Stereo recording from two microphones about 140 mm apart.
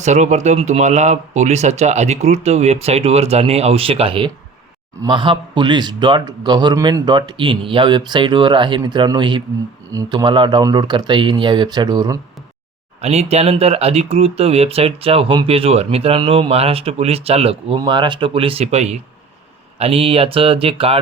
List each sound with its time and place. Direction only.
0.0 s a man's voice: 55° right (ahead or behind); by 12.2 s 30° right (ahead or behind)
13.0 s a man's voice: 45° right (ahead or behind)